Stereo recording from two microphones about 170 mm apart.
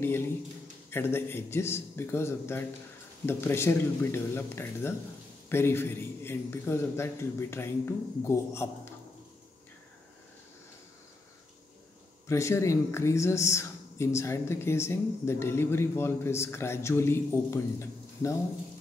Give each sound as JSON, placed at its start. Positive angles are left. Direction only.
{"t": 0.8, "sound": "a woman's voice", "side_deg": 15}
{"t": 12.3, "sound": "a woman's voice", "side_deg": 15}